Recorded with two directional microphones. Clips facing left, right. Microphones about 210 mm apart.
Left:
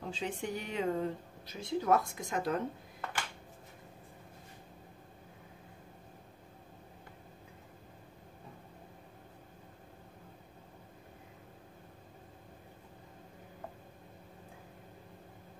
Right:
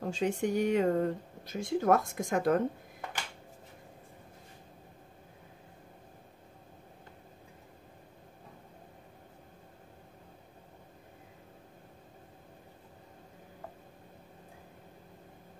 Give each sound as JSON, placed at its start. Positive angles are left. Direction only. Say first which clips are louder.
{"t": 0.0, "sound": "speech", "louder": "right 7 dB", "side_deg": -45}